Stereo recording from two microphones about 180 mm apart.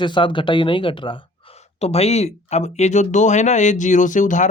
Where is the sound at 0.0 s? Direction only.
25° left (ahead or behind).